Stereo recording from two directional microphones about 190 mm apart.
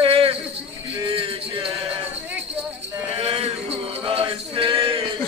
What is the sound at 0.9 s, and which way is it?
Music, 30° right (ahead or behind).